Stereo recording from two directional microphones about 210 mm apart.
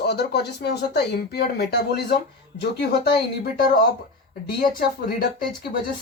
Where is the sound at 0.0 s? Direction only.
50° left (ahead or behind).